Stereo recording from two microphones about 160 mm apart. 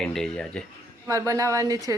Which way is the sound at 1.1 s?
20° right (ahead or behind).